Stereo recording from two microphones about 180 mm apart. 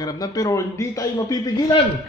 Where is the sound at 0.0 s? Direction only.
20° left (ahead or behind).